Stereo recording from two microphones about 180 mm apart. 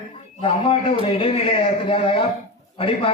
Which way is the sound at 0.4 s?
30° left (ahead or behind).